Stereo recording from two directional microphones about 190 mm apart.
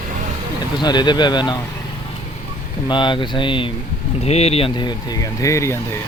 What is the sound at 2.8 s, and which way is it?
Speech, 25° left (ahead or behind).